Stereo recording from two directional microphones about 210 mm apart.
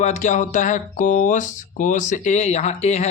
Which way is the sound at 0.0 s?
35° left (ahead or behind).